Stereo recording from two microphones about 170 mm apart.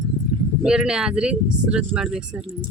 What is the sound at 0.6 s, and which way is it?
Speech, 5° right (ahead or behind).